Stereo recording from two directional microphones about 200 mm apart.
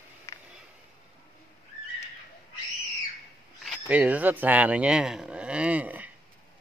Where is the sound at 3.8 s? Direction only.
5° right (ahead or behind).